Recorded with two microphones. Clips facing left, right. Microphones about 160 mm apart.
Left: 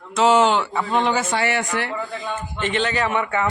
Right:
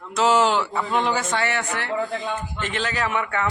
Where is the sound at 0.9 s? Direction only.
Centre (ahead or behind).